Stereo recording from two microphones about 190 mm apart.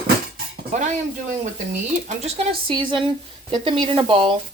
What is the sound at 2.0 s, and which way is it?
Speech, 35° right (ahead or behind).